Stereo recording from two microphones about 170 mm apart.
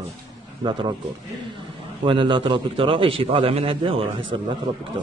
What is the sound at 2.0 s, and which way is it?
A man's voice, 30° right (ahead or behind).